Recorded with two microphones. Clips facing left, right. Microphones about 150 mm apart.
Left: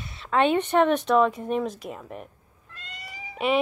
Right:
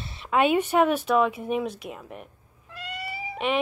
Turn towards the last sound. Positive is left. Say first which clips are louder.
# left 2 dB
turn(degrees=0)  # may be behind; listen again after turning